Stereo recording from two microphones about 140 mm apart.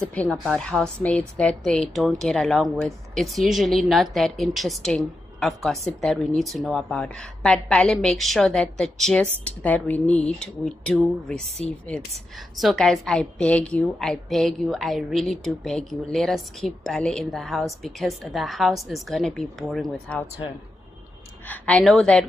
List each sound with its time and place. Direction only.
0.0 s a woman's voice: 10° left (ahead or behind)
12.5 s a woman's voice: centre (ahead or behind)
21.5 s a woman's voice: 5° left (ahead or behind)